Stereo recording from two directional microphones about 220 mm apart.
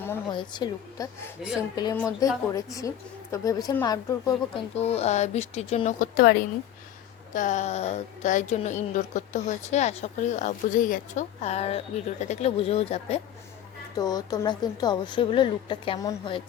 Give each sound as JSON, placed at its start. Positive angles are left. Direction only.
{"t": 0.0, "sound": "a sound", "side_deg": 10}
{"t": 0.3, "sound": "a woman's voice", "side_deg": 20}
{"t": 4.8, "sound": "a woman's voice", "side_deg": 30}
{"t": 13.9, "sound": "a woman's voice", "side_deg": 15}